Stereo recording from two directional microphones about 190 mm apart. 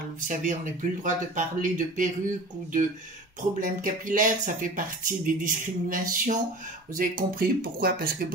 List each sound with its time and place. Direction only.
0.3 s speech: 45° right (ahead or behind)